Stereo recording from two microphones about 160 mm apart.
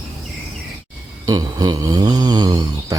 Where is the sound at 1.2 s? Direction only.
25° right (ahead or behind).